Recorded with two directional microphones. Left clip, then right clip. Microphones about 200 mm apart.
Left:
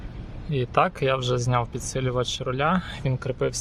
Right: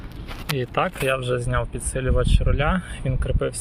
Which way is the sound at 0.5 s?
20° left (ahead or behind).